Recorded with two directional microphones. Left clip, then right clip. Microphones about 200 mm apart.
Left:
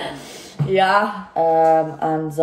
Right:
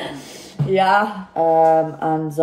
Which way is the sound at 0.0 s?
5° right (ahead or behind).